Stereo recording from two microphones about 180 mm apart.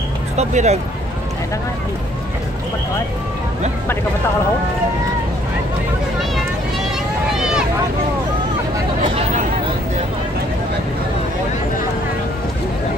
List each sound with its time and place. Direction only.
0.4 s speech: 40° right (ahead or behind)
7.3 s vehicle: 5° right (ahead or behind)